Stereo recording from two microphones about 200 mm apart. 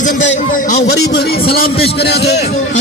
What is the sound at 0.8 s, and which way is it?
A man's voice, 55° left (ahead or behind).